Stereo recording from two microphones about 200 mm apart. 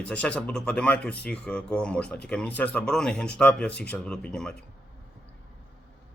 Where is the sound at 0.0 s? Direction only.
5° left (ahead or behind).